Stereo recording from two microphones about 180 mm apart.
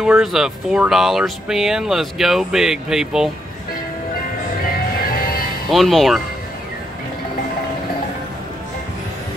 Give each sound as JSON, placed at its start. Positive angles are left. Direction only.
{"t": 0.0, "sound": "speech", "side_deg": 0}
{"t": 5.0, "sound": "music", "side_deg": 55}
{"t": 5.7, "sound": "speech", "side_deg": 0}